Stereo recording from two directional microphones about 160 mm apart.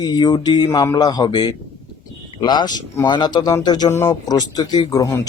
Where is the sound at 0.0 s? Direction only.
25° left (ahead or behind).